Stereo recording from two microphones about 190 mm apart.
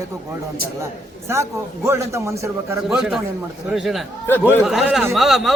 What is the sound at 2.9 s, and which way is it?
A man's voice, centre (ahead or behind).